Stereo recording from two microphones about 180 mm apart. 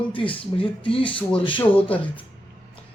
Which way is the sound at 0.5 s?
20° left (ahead or behind).